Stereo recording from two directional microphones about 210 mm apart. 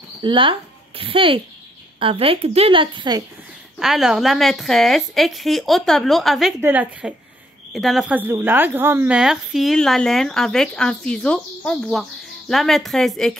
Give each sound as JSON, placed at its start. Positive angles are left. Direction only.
{"t": 0.2, "sound": "a woman's voice", "side_deg": -25}
{"t": 3.8, "sound": "a woman's voice", "side_deg": 0}